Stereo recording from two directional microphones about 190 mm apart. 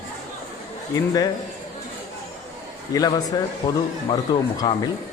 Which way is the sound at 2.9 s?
20° left (ahead or behind).